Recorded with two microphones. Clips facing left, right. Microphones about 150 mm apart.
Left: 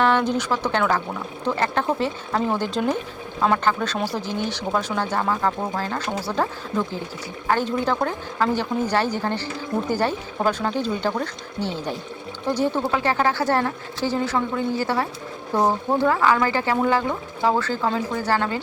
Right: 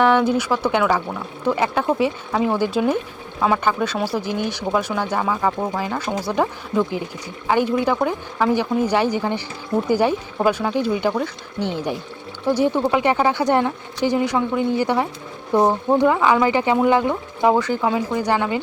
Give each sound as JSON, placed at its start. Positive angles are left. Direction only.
{"t": 0.0, "sound": "speech", "side_deg": -10}